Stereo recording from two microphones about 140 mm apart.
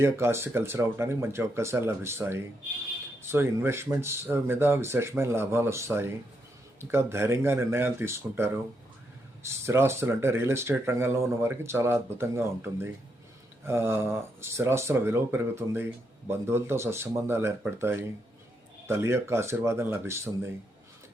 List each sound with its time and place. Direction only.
0.0 s speech: 20° right (ahead or behind)